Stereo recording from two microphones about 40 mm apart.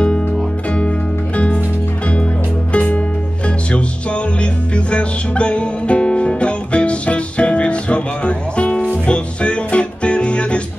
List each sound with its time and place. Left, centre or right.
0.7 s music: left
2.7 s music: left